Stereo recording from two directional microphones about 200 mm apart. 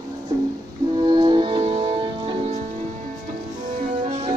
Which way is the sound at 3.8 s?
35° right (ahead or behind).